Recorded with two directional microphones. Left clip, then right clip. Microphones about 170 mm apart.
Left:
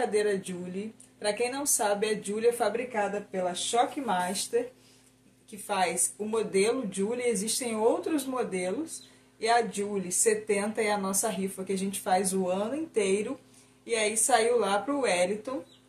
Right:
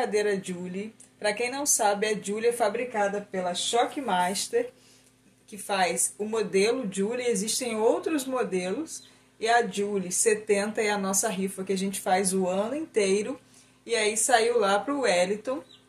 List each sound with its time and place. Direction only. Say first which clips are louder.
0.0 s speech: right 1 dB; 15° right (ahead or behind)